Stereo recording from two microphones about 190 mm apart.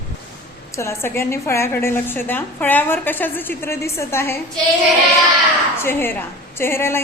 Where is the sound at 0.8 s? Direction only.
15° left (ahead or behind).